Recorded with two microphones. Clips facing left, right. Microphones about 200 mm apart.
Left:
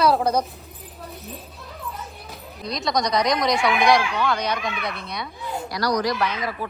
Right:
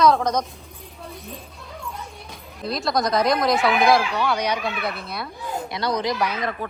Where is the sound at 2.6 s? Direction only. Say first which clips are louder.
Right 1 dB; 5° right (ahead or behind).